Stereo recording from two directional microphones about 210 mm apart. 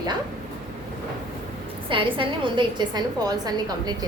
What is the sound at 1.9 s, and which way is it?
A woman's voice, 25° right (ahead or behind).